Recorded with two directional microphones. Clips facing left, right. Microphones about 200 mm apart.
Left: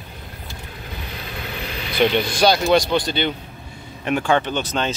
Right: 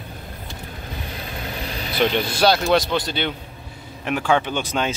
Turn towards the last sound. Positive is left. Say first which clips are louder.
# even
turn(degrees=-10)  # may be behind; listen again after turning